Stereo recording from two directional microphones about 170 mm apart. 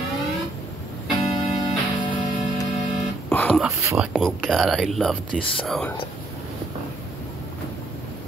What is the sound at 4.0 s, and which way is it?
Speech, centre (ahead or behind).